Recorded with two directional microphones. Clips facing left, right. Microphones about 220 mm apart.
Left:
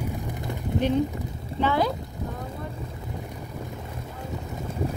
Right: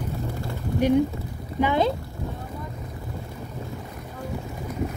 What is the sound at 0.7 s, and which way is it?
Speech, 10° right (ahead or behind).